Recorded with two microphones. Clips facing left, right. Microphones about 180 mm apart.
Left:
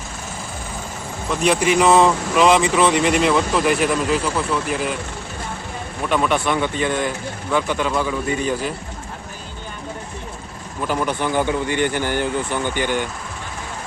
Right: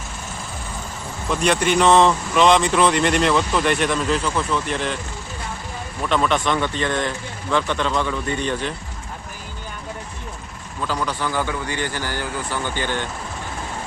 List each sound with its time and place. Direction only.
1.3 s speech: centre (ahead or behind)
6.1 s speech: 10° left (ahead or behind)
10.8 s a man's voice: 20° left (ahead or behind)